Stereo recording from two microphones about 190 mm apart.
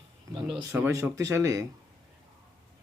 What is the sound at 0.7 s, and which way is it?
Speech, 15° right (ahead or behind).